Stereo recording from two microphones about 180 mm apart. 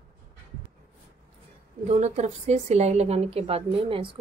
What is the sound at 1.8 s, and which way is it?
Speech, 40° right (ahead or behind).